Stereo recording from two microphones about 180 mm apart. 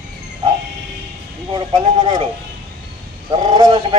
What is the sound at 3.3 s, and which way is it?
Speech, 25° right (ahead or behind).